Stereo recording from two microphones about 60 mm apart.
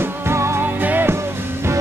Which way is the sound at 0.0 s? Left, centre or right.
Right.